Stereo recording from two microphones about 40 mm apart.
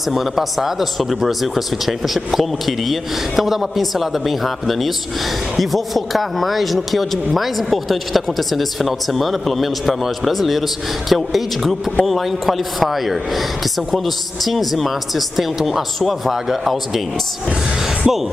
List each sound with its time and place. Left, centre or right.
0.1 s speech: centre
18.1 s speech: centre